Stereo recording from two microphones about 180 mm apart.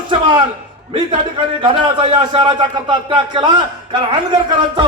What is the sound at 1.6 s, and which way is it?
A man's voice, 30° right (ahead or behind).